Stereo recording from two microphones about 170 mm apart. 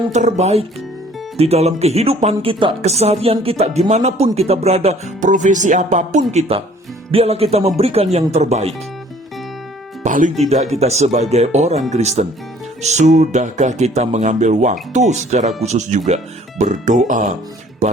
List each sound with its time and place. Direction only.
0.1 s speech: 45° right (ahead or behind)
10.0 s speech: 50° right (ahead or behind)